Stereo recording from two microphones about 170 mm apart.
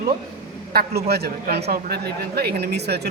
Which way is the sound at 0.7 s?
70° right (ahead or behind).